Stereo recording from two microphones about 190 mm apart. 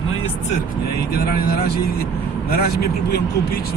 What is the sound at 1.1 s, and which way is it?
A man's voice, 55° left (ahead or behind).